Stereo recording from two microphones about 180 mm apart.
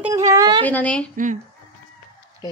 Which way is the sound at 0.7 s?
10° left (ahead or behind).